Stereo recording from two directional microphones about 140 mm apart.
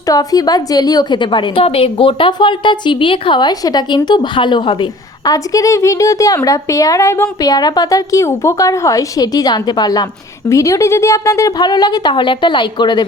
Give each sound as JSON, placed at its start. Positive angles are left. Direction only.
{"t": 0.1, "sound": "a woman's voice", "side_deg": 25}